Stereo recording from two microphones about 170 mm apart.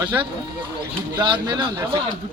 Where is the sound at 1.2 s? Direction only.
25° right (ahead or behind).